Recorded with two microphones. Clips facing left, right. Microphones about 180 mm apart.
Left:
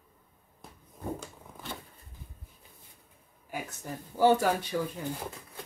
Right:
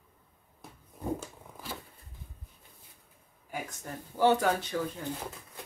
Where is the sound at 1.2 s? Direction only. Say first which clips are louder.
Even; 5° right (ahead or behind).